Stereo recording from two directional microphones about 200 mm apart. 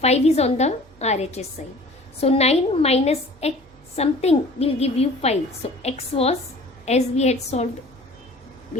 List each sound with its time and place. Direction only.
0.0 s a woman's voice: 30° left (ahead or behind)